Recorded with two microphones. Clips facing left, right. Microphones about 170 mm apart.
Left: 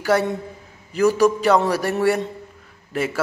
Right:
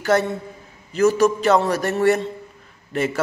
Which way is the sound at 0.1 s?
10° left (ahead or behind).